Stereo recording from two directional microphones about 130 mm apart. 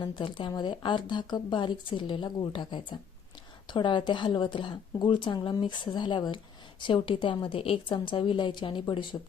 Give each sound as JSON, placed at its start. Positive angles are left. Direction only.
{"t": 0.0, "sound": "a woman's voice", "side_deg": 40}